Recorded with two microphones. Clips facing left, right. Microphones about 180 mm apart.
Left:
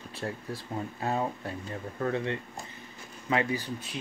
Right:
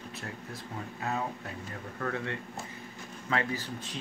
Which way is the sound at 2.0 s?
20° left (ahead or behind).